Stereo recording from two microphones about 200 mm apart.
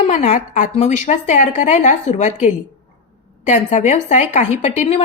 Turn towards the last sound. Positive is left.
turn(degrees=35)  # may be behind; listen again after turning